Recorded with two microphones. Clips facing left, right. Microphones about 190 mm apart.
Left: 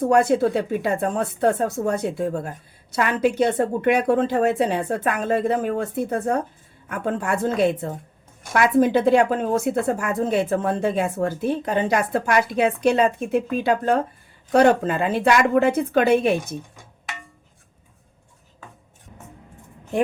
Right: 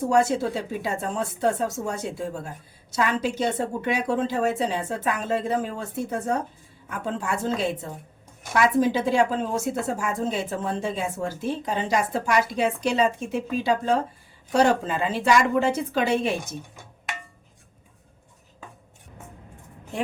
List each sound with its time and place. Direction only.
0.1 s a woman's voice: 60° left (ahead or behind)